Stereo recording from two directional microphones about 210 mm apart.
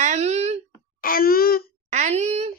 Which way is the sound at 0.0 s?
35° right (ahead or behind).